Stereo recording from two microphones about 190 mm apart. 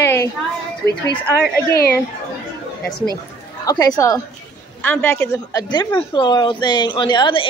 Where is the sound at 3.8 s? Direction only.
20° left (ahead or behind).